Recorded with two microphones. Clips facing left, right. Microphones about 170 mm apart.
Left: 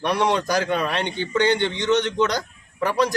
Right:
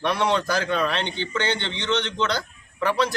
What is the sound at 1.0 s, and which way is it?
Speech, 45° left (ahead or behind).